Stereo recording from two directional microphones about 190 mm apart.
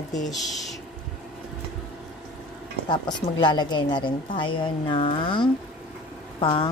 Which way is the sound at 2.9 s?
25° left (ahead or behind).